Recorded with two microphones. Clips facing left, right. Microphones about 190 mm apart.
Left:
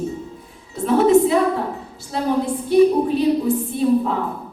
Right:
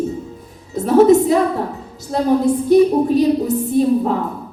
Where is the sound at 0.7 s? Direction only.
40° right (ahead or behind).